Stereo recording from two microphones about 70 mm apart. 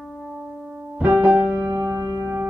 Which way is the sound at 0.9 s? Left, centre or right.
Right.